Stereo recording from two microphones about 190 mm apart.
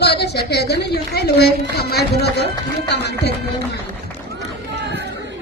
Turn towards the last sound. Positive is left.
turn(degrees=-65)  # may be behind; listen again after turning